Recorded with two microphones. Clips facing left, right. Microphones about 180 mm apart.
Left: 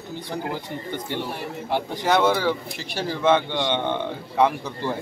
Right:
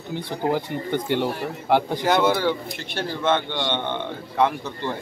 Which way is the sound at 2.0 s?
5° right (ahead or behind).